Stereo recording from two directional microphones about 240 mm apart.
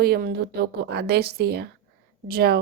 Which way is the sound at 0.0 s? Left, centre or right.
Right.